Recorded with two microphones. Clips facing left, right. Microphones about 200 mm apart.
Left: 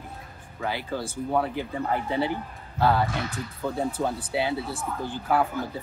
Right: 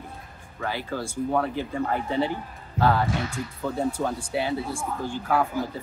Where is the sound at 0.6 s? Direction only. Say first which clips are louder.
Even; 15° left (ahead or behind).